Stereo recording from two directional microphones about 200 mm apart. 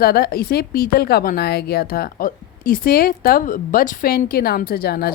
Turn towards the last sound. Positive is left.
turn(degrees=50)  # may be behind; listen again after turning